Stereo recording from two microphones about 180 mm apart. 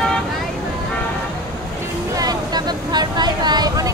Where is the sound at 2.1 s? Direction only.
20° right (ahead or behind).